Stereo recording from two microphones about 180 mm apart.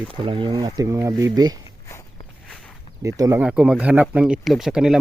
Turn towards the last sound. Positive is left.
turn(degrees=-5)  # may be behind; listen again after turning